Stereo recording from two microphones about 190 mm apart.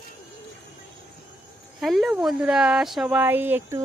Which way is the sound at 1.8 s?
Centre (ahead or behind).